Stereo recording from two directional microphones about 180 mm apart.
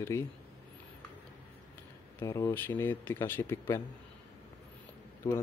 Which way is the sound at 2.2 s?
15° left (ahead or behind).